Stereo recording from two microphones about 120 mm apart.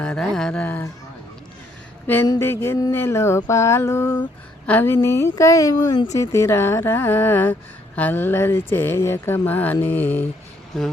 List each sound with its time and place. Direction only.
0.0 s speech: 5° left (ahead or behind)
2.4 s a sound: 20° left (ahead or behind)
7.9 s speech: 15° left (ahead or behind)
10.7 s speech: centre (ahead or behind)